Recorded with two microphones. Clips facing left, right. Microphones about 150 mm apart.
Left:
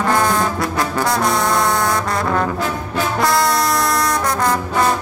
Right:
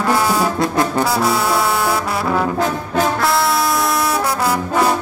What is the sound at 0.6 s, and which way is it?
Brass instrument, 25° right (ahead or behind).